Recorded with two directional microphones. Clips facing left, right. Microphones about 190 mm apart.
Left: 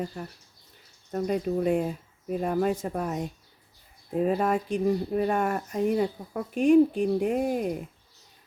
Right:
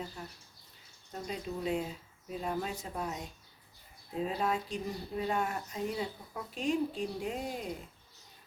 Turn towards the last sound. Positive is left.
turn(degrees=55)  # may be behind; listen again after turning